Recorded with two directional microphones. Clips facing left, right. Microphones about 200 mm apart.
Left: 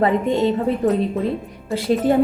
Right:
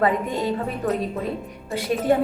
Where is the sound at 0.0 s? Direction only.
25° left (ahead or behind).